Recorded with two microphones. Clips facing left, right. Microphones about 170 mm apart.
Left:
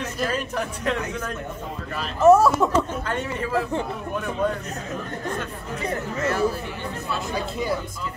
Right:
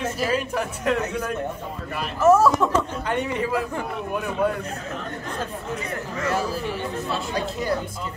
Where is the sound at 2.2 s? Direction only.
20° left (ahead or behind).